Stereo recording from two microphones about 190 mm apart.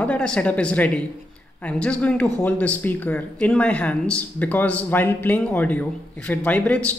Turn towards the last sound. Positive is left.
turn(degrees=5)  # may be behind; listen again after turning